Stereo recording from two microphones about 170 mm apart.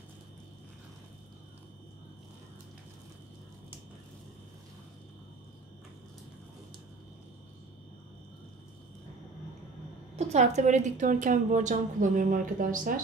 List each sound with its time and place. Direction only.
10.1 s a woman's voice: 40° right (ahead or behind)